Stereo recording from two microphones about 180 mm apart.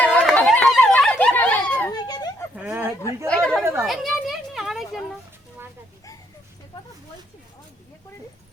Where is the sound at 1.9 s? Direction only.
20° left (ahead or behind).